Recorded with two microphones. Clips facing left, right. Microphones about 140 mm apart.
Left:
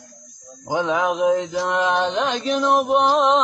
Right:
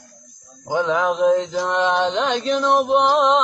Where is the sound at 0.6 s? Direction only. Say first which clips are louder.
Right 1 dB; 15° left (ahead or behind).